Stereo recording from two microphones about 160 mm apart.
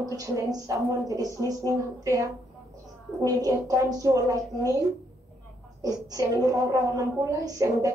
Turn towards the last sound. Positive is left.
turn(degrees=-20)  # may be behind; listen again after turning